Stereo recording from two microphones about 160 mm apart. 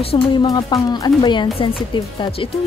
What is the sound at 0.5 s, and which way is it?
Speech, 25° left (ahead or behind).